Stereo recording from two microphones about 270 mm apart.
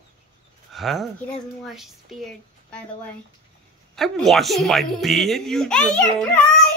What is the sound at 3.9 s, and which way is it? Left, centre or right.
Speech, centre.